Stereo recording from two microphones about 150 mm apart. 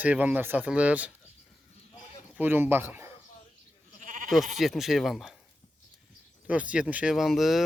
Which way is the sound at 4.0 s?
65° right (ahead or behind).